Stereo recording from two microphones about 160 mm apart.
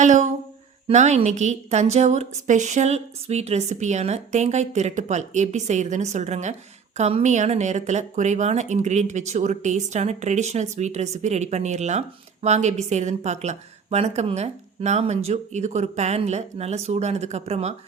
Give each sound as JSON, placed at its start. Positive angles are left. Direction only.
{"t": 0.0, "sound": "a woman's voice", "side_deg": -50}